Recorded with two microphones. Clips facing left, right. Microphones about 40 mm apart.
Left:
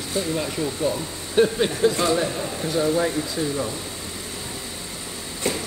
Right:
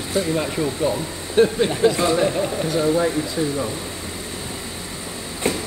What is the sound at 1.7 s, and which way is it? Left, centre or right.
Speech, right.